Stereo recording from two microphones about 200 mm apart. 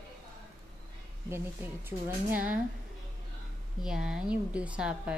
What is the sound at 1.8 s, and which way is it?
Speech, 10° right (ahead or behind).